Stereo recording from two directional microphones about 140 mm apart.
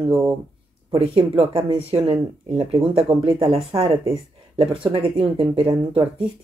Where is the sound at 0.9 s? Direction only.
40° right (ahead or behind).